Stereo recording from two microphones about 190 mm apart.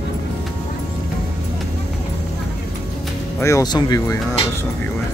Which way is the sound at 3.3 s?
15° left (ahead or behind).